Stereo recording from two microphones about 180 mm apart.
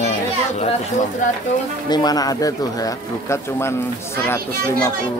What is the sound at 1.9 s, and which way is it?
Speech, 20° left (ahead or behind).